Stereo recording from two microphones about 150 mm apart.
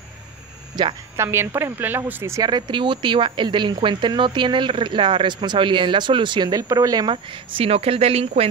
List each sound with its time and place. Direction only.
0.8 s speech: 30° right (ahead or behind)
1.1 s speech: 15° right (ahead or behind); by 8.3 s 40° right (ahead or behind)